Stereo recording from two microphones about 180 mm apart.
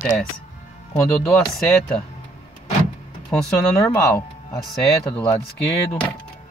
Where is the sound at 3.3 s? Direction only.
5° left (ahead or behind).